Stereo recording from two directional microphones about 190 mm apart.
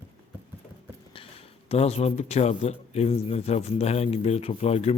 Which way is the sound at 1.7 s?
35° left (ahead or behind).